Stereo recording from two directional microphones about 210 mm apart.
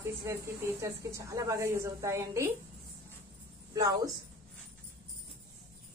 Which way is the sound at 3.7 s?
15° right (ahead or behind).